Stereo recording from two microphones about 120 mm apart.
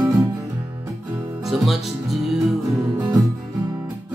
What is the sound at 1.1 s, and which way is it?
Music, 20° right (ahead or behind).